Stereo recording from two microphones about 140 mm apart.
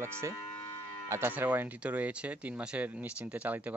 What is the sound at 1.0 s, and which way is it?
Speech, 20° right (ahead or behind).